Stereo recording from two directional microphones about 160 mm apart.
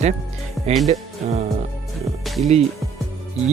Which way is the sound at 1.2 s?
45° right (ahead or behind).